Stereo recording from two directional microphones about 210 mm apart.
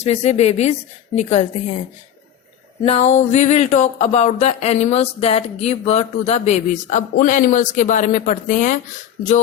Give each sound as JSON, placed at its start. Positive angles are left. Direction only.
{"t": 0.0, "sound": "speech", "side_deg": 30}
{"t": 2.8, "sound": "speech", "side_deg": 30}